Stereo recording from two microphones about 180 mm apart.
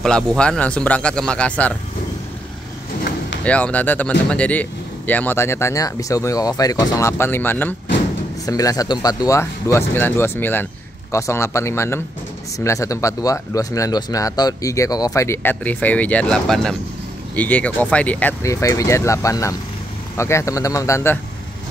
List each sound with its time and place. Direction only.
0.0 s speech: 5° left (ahead or behind)
3.4 s speech: 5° left (ahead or behind)